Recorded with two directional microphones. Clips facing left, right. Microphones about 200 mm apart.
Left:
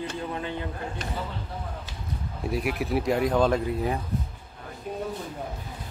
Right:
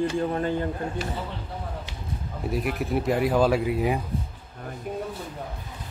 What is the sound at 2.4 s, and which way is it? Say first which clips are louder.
A man's voice: even; centre (ahead or behind).